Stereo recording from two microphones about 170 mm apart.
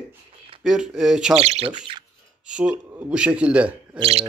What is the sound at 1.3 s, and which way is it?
Speech, 35° right (ahead or behind).